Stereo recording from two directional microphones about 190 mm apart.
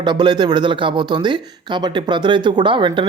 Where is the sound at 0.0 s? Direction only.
25° right (ahead or behind).